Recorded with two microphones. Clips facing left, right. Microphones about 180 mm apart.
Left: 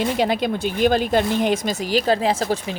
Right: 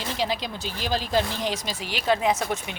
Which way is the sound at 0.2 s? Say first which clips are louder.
Left 8 dB; 55° left (ahead or behind).